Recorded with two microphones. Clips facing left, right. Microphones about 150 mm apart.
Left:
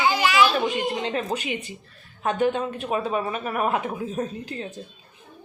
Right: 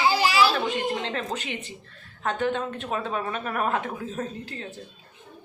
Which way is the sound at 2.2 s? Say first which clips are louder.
Left 3 dB; 15° left (ahead or behind).